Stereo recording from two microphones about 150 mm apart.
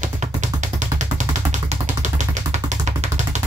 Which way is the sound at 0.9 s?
55° right (ahead or behind).